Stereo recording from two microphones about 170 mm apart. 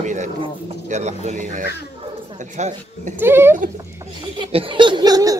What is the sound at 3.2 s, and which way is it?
Speech, 15° right (ahead or behind).